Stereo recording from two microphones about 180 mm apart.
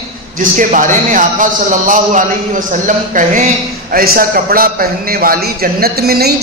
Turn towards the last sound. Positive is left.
turn(degrees=-60)  # may be behind; listen again after turning